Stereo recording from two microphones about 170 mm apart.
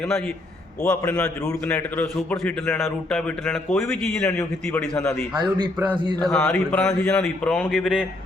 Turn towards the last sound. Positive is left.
turn(degrees=5)  # may be behind; listen again after turning